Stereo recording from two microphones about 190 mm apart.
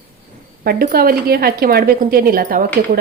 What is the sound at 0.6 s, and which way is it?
A woman's voice, 55° right (ahead or behind).